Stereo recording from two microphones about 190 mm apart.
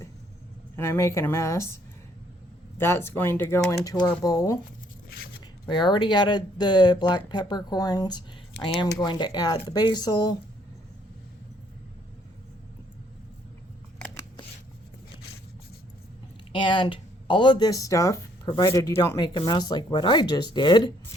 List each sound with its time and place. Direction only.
0.8 s speech: 15° left (ahead or behind)
5.6 s speech: 25° left (ahead or behind)
16.5 s speech: 25° left (ahead or behind)